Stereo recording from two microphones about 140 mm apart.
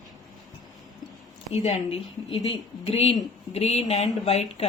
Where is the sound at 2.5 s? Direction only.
45° left (ahead or behind).